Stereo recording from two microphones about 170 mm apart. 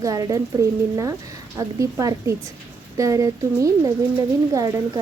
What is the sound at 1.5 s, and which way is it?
A woman's voice, 20° right (ahead or behind).